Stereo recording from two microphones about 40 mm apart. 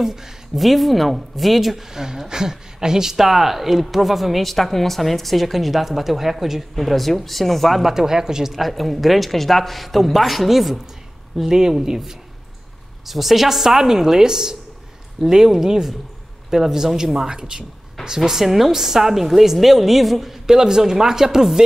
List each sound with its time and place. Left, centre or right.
0.0 s a woman's voice: centre
7.9 s a woman's voice: centre
8.5 s a woman's voice: centre